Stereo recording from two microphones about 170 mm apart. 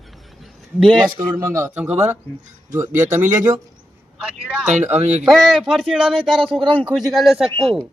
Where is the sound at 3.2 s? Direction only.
45° right (ahead or behind).